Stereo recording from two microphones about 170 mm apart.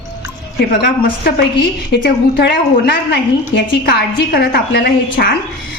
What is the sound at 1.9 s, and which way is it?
A woman's voice, 75° left (ahead or behind).